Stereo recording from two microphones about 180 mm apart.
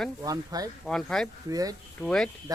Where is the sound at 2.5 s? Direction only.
20° right (ahead or behind).